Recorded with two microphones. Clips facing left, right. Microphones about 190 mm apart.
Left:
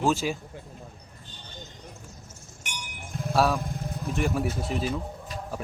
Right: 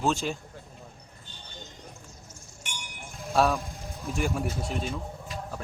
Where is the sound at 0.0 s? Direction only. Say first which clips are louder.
Left 2 dB; 5° left (ahead or behind).